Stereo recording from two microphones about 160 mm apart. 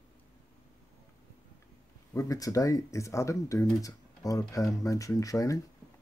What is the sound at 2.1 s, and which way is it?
Speech, 20° left (ahead or behind).